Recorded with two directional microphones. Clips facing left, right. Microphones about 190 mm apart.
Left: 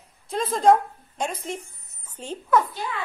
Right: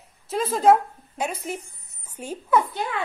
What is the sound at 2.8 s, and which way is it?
Speech, 55° right (ahead or behind).